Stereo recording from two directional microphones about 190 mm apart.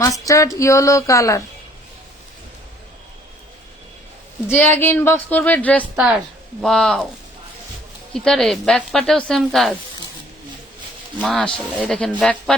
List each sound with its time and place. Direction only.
0.3 s speech: 15° left (ahead or behind)
4.4 s speech: 10° left (ahead or behind)
8.1 s speech: centre (ahead or behind)
11.2 s speech: 5° left (ahead or behind)